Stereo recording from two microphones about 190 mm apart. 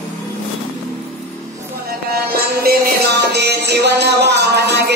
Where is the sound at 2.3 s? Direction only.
55° right (ahead or behind).